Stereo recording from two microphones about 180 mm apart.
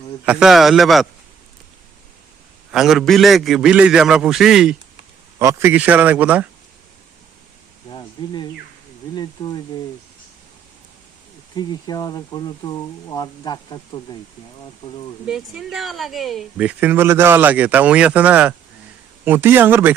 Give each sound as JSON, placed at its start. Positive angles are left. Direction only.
{"t": 0.3, "sound": "a man's voice", "side_deg": -5}
{"t": 2.7, "sound": "a man's voice", "side_deg": 0}
{"t": 4.9, "sound": "a man's voice", "side_deg": -15}
{"t": 7.9, "sound": "insect", "side_deg": 25}
{"t": 9.1, "sound": "speech", "side_deg": 25}
{"t": 11.5, "sound": "speech", "side_deg": 20}
{"t": 15.3, "sound": "speech", "side_deg": 0}